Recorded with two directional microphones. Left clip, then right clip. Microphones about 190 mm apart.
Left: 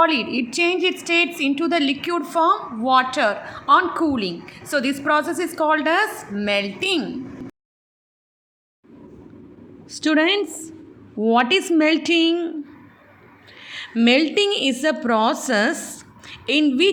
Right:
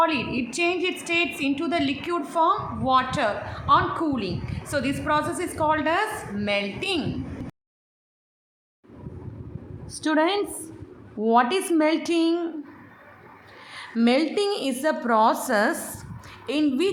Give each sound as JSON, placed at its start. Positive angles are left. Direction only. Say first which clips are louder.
{"t": 0.0, "sound": "a woman's voice", "louder": "left 5 dB", "side_deg": 25}
{"t": 9.9, "sound": "a woman's voice", "louder": "left 4 dB", "side_deg": 20}
{"t": 13.6, "sound": "a sound", "louder": "left 7 dB", "side_deg": 25}
{"t": 14.0, "sound": "a woman's voice", "louder": "left 5 dB", "side_deg": 20}